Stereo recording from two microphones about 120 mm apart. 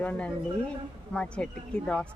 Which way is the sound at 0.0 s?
10° left (ahead or behind).